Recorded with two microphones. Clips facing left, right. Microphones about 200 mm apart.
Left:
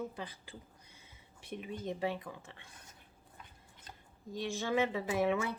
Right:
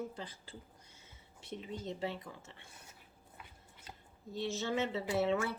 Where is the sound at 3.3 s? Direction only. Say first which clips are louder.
Right 1 dB; 10° right (ahead or behind).